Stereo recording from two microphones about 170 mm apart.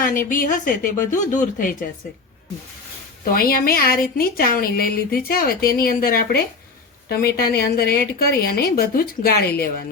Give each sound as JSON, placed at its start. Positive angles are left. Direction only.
{"t": 0.3, "sound": "speech", "side_deg": 50}
{"t": 3.3, "sound": "a woman's voice", "side_deg": 60}